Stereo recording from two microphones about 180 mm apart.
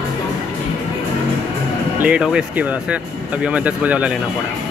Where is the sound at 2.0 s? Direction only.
5° right (ahead or behind).